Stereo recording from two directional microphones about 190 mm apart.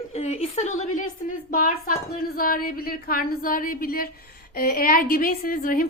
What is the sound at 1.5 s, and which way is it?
A woman's voice, 50° left (ahead or behind).